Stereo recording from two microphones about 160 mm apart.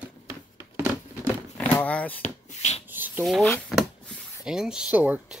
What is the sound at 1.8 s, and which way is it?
Speech, 10° left (ahead or behind).